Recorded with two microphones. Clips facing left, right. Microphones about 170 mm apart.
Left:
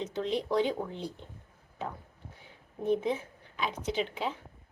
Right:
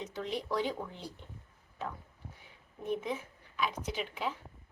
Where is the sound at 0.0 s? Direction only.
20° left (ahead or behind).